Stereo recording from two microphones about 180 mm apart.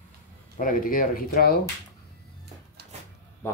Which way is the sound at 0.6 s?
50° left (ahead or behind).